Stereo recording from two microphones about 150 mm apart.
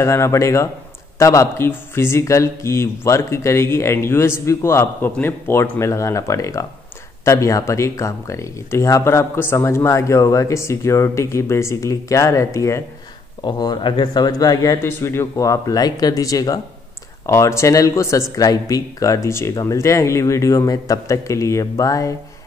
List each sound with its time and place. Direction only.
0.0 s a man's voice: 20° left (ahead or behind)